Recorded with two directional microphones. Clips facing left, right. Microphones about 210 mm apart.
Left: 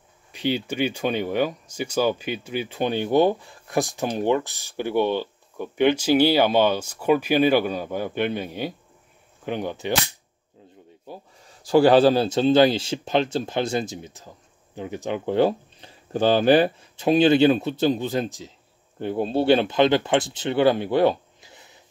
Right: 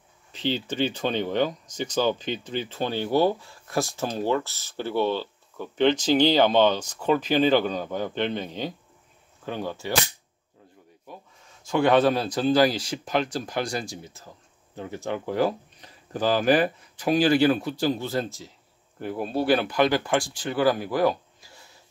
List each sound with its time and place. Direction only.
0.3 s speech: 10° left (ahead or behind)
11.1 s speech: 35° left (ahead or behind)